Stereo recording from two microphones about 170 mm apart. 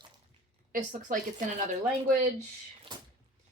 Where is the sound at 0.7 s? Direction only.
50° right (ahead or behind).